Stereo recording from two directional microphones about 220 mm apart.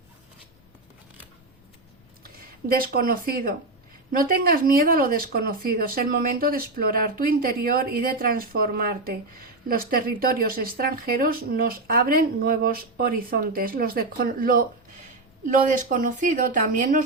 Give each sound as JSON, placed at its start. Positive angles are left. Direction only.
{"t": 2.4, "sound": "speech", "side_deg": -40}